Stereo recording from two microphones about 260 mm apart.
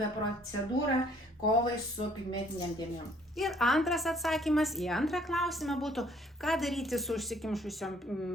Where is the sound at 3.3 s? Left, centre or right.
Centre.